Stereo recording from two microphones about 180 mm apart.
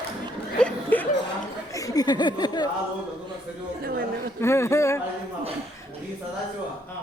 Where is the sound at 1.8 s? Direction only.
20° left (ahead or behind).